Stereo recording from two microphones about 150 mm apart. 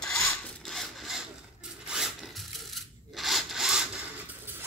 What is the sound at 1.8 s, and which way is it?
Rub, 5° right (ahead or behind).